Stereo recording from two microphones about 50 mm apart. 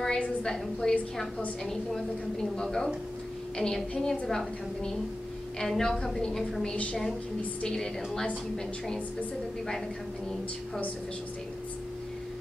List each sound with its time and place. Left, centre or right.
0.0 s a sound: centre
1.6 s a woman's voice: centre
5.6 s a woman's voice: centre